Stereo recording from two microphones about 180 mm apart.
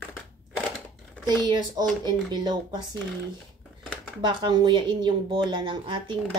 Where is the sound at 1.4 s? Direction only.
25° right (ahead or behind).